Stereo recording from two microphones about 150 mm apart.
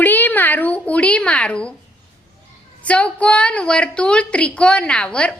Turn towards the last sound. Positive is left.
turn(degrees=5)  # may be behind; listen again after turning